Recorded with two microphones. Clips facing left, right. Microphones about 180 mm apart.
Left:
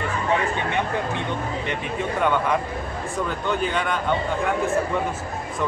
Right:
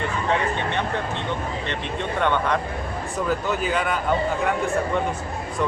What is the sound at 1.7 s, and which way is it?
Speech, 5° left (ahead or behind).